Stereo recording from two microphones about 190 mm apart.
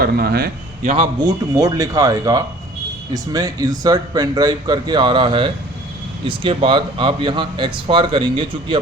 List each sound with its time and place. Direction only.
0.0 s a man's voice: 55° right (ahead or behind)
0.8 s a man's voice: 30° right (ahead or behind)
1.2 s speech: 20° right (ahead or behind)